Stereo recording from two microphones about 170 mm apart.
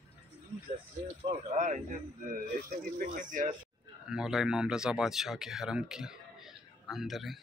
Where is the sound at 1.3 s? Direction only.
45° right (ahead or behind).